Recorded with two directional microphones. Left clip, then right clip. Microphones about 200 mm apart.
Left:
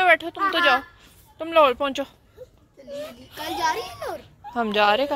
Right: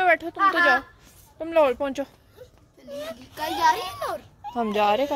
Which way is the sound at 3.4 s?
65° right (ahead or behind).